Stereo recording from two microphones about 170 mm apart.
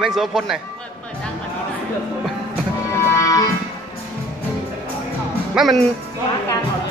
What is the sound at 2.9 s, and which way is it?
Music, 15° left (ahead or behind).